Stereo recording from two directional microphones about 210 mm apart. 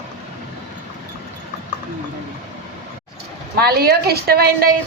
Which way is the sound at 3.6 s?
50° right (ahead or behind).